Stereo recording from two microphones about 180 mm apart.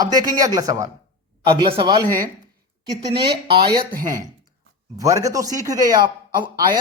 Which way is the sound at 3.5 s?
25° right (ahead or behind).